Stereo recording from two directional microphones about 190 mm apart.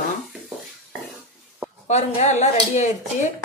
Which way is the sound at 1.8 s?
35° left (ahead or behind).